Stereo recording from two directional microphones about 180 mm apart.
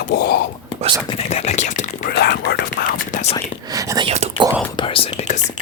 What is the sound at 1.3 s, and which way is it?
Whispering, 35° left (ahead or behind).